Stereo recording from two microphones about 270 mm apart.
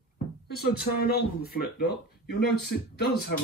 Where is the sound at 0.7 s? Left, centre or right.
Left.